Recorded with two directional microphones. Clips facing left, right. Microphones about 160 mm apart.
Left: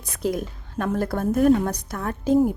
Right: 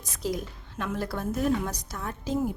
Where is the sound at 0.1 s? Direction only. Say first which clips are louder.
Left 6 dB; 55° left (ahead or behind).